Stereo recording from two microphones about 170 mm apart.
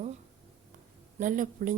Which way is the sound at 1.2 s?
50° right (ahead or behind).